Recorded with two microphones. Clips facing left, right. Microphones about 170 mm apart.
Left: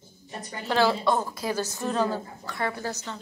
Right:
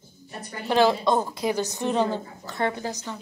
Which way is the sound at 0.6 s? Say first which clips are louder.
Right 3 dB; 15° right (ahead or behind).